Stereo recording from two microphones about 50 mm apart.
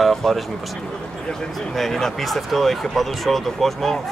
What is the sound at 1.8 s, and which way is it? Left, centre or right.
Speech, centre.